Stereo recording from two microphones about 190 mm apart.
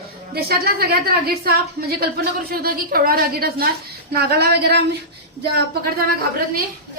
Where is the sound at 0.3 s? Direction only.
55° right (ahead or behind).